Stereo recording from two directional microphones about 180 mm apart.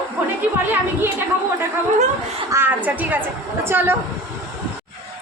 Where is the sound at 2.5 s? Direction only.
15° right (ahead or behind).